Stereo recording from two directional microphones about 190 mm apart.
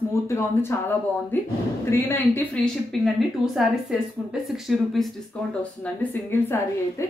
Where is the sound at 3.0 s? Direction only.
Centre (ahead or behind).